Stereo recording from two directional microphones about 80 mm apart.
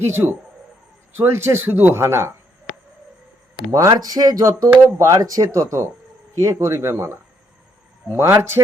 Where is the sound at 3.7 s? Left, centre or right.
Right.